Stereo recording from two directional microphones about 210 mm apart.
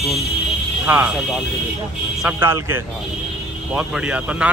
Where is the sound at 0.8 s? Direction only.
10° right (ahead or behind).